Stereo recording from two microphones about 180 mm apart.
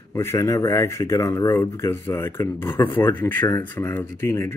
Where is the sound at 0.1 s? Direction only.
15° left (ahead or behind).